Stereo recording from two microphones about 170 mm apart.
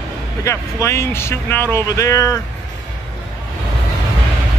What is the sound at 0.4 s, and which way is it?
Speech, 15° left (ahead or behind).